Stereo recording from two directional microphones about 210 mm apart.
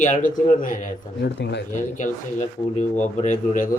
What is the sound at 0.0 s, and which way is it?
Speech, 35° left (ahead or behind).